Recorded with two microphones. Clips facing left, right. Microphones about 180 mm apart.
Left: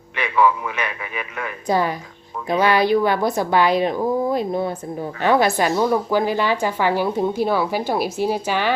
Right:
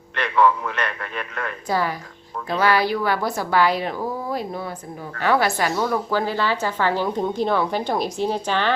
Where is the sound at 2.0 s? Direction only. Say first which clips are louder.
Left 1 dB; centre (ahead or behind).